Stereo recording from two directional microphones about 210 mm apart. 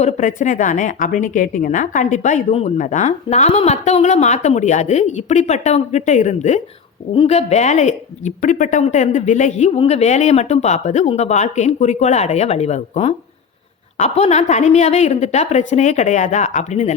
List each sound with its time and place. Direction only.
0.0 s a woman's voice: 35° left (ahead or behind)